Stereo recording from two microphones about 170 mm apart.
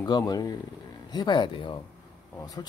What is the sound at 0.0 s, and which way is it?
Speech, 25° left (ahead or behind).